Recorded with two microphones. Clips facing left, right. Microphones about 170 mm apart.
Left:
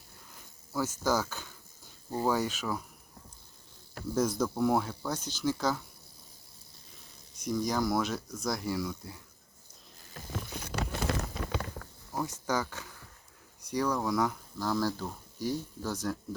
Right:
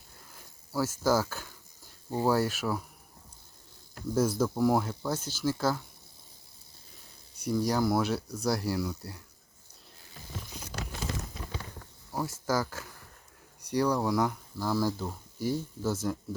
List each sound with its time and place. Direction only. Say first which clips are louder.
0.7 s speech: right 3 dB; 10° right (ahead or behind)
4.1 s speech: right 2 dB; 5° right (ahead or behind)
7.5 s speech: right 2 dB; 5° right (ahead or behind)
10.3 s patter: left 4 dB; 60° left (ahead or behind)
12.5 s speech: right 4 dB; 5° right (ahead or behind)